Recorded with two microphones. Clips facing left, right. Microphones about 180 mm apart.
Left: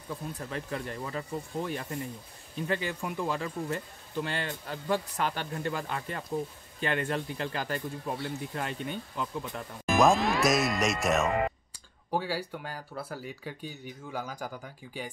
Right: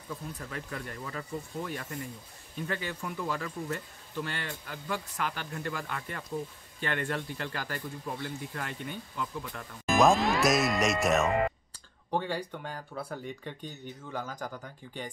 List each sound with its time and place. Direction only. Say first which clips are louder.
0.1 s speech: left 3 dB; 25° left (ahead or behind)
9.8 s speech: even; centre (ahead or behind)